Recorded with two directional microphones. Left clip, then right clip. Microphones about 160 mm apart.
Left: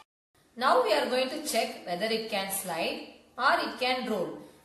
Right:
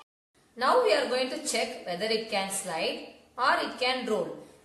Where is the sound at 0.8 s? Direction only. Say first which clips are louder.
Right 1 dB; 40° right (ahead or behind).